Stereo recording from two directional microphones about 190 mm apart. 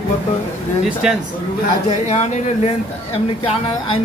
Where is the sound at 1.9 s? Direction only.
40° left (ahead or behind).